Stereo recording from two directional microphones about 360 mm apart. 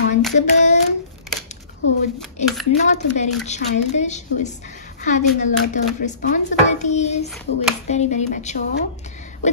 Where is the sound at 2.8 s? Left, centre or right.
Centre.